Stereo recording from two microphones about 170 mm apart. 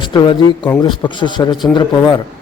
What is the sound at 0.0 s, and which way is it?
A man's voice, 25° left (ahead or behind).